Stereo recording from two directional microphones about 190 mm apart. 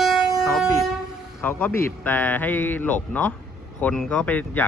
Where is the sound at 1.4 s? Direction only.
10° left (ahead or behind).